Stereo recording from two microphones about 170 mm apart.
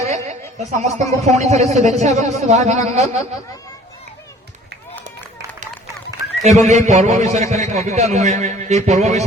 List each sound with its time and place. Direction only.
0.3 s speech: 45° right (ahead or behind)
6.4 s speech: 40° right (ahead or behind)